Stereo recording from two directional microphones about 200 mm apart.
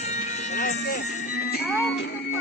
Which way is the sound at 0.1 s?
35° left (ahead or behind).